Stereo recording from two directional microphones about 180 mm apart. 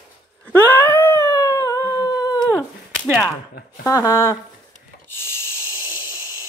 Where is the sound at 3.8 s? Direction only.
15° left (ahead or behind).